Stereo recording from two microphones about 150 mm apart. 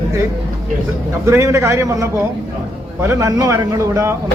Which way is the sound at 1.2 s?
20° right (ahead or behind).